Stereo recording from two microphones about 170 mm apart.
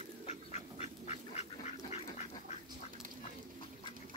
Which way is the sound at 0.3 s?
40° left (ahead or behind).